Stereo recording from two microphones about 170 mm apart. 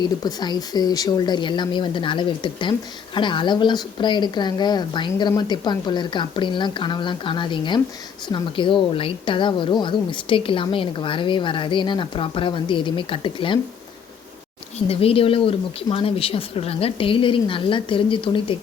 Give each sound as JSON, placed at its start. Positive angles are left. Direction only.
{"t": 0.0, "sound": "a woman's voice", "side_deg": 25}
{"t": 14.8, "sound": "speech", "side_deg": 35}